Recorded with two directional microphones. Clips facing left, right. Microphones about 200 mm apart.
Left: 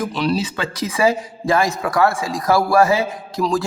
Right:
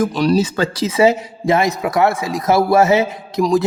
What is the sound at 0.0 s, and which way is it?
Speech, 45° right (ahead or behind).